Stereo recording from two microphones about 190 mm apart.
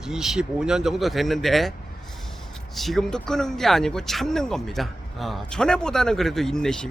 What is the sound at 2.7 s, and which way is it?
Speech, centre (ahead or behind).